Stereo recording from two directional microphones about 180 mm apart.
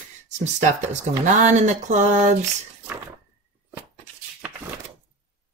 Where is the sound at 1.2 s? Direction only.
40° right (ahead or behind).